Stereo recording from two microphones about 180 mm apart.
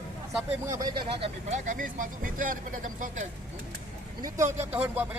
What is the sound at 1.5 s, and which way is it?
Speech, 45° right (ahead or behind).